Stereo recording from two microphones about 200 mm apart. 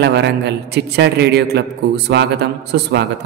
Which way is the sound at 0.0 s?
55° right (ahead or behind).